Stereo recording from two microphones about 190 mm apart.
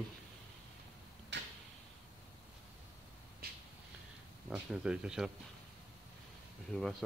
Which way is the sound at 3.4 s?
55° right (ahead or behind).